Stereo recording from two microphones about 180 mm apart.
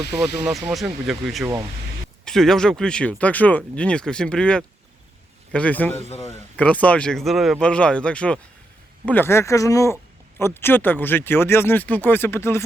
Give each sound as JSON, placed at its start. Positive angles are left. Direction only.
{"t": 0.2, "sound": "a man's voice", "side_deg": 0}